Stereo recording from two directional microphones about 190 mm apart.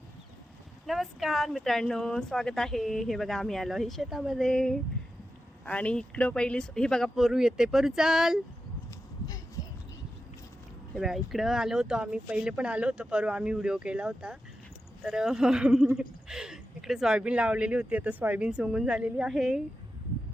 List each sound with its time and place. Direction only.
0.9 s speech: centre (ahead or behind)
9.6 s a sound: 20° left (ahead or behind)
10.9 s speech: centre (ahead or behind)